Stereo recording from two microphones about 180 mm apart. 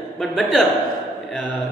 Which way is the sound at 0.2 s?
Centre (ahead or behind).